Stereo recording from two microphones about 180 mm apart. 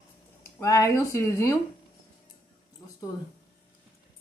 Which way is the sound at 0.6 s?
15° left (ahead or behind).